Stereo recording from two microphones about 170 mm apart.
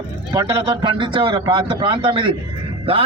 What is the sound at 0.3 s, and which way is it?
A man's voice, 25° right (ahead or behind).